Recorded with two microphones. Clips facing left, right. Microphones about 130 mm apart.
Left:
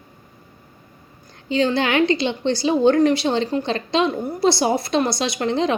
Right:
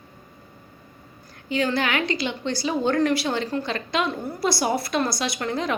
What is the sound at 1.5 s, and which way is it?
A woman's voice, 25° left (ahead or behind).